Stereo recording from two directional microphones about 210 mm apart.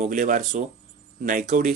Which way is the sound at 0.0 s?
40° right (ahead or behind).